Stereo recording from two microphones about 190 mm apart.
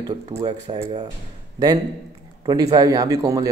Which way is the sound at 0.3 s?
20° right (ahead or behind).